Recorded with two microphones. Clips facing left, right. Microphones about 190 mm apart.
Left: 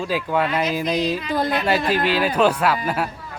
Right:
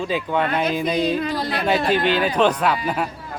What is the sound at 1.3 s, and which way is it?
Speech, 50° left (ahead or behind).